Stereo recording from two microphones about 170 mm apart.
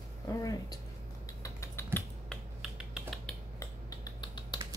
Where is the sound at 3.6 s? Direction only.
25° left (ahead or behind).